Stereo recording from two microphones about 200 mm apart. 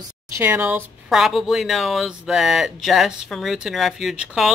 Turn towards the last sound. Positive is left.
turn(degrees=0)  # may be behind; listen again after turning